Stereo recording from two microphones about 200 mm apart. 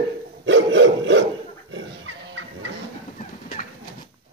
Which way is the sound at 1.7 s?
75° right (ahead or behind).